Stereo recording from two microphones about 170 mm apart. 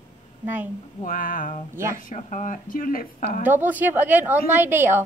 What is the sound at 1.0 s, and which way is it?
A woman's voice, 55° left (ahead or behind).